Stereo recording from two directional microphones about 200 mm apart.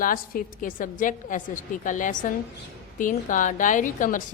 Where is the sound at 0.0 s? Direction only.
45° left (ahead or behind).